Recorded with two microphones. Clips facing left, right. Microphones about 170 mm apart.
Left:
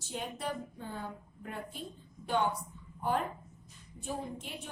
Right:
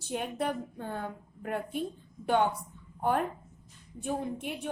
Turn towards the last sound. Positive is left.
turn(degrees=-60)  # may be behind; listen again after turning